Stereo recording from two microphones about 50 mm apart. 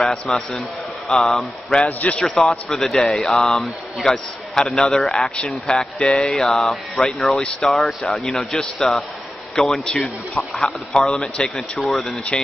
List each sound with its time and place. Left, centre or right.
0.0 s speech: centre
1.9 s a man's voice: left
2.2 s a man's voice: centre
5.3 s a man's voice: left
11.8 s speech: centre